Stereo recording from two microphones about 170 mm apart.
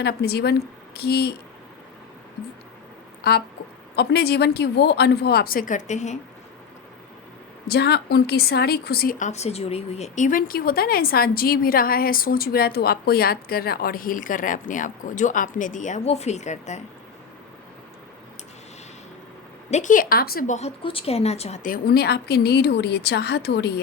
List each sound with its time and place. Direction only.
0.0 s a woman's voice: 70° left (ahead or behind)
3.2 s a sound: 65° left (ahead or behind)
3.9 s a woman's voice: 70° left (ahead or behind); by 6.1 s 45° left (ahead or behind)
7.7 s a woman's voice: 70° left (ahead or behind); by 16.8 s 45° left (ahead or behind)
19.7 s a woman's voice: 50° left (ahead or behind)
20.6 s a woman's voice: 35° left (ahead or behind); by 23.8 s 75° left (ahead or behind)